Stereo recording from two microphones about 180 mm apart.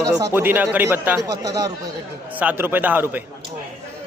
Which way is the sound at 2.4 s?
10° right (ahead or behind).